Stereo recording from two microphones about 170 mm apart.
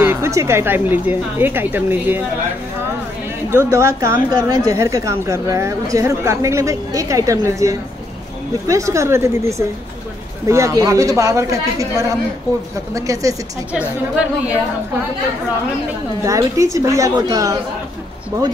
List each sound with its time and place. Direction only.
0.0 s speech: 15° right (ahead or behind)
3.4 s speech: 15° right (ahead or behind)
13.7 s speech: 10° right (ahead or behind)
16.3 s speech: 20° right (ahead or behind)